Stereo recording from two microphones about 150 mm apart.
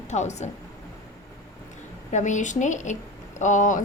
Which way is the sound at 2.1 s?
55° left (ahead or behind).